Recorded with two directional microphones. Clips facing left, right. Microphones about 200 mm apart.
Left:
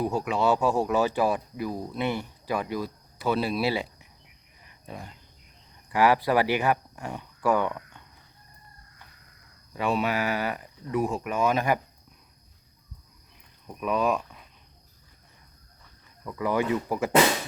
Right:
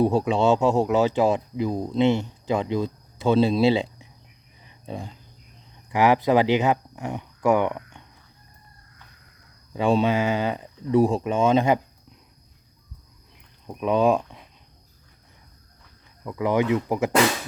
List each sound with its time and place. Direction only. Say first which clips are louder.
0.0 s speech: right 5 dB; 30° right (ahead or behind)
5.9 s speech: right 3 dB; 20° right (ahead or behind)
9.7 s speech: right 6 dB; 30° right (ahead or behind)
13.7 s speech: right 6 dB; 25° right (ahead or behind)
16.2 s speech: right 4 dB; 20° right (ahead or behind)